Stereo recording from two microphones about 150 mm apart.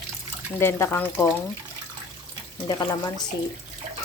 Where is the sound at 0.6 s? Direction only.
15° left (ahead or behind).